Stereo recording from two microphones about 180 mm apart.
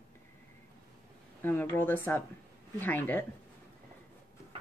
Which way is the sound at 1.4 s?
10° left (ahead or behind).